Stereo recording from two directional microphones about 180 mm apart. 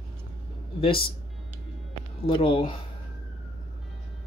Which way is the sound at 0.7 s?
30° left (ahead or behind).